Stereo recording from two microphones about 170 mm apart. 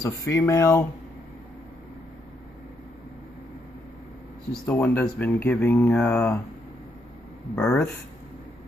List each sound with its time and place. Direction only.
0.0 s speech: 15° left (ahead or behind)
4.6 s speech: 10° left (ahead or behind)
7.5 s speech: 10° left (ahead or behind)